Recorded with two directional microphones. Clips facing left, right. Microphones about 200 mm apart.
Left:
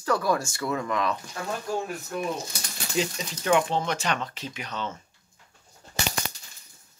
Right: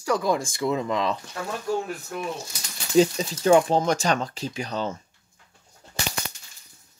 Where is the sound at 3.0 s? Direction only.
35° right (ahead or behind).